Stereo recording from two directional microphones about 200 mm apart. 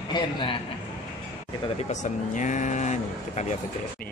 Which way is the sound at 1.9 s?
40° left (ahead or behind).